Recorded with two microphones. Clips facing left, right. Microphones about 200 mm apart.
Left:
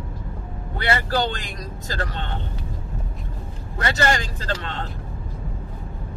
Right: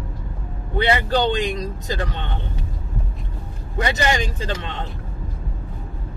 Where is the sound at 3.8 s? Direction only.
15° right (ahead or behind).